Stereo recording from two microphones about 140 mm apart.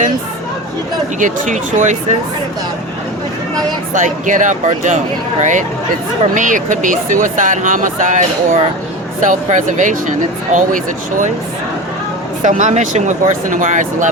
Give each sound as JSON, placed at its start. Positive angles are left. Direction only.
{"t": 1.2, "sound": "speech", "side_deg": -60}
{"t": 3.9, "sound": "speech", "side_deg": -65}
{"t": 12.4, "sound": "speech", "side_deg": -60}